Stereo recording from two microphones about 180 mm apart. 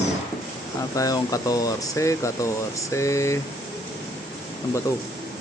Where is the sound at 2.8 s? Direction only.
15° left (ahead or behind).